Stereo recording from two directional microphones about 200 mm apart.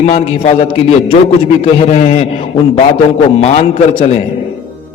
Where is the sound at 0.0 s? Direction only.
35° left (ahead or behind).